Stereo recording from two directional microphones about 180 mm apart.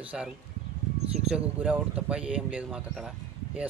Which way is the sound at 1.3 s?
5° right (ahead or behind).